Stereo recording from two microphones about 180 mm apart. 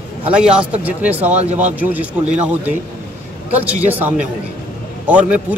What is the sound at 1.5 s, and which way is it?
Speech, 40° right (ahead or behind).